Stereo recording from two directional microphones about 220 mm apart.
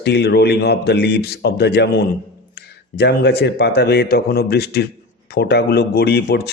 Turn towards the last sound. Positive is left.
turn(degrees=45)  # may be behind; listen again after turning